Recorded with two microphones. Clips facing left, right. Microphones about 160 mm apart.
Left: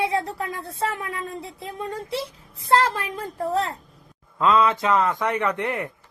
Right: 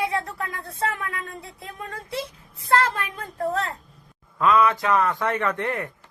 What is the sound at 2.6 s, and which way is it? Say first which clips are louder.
A woman's voice: left 2 dB; 30° left (ahead or behind).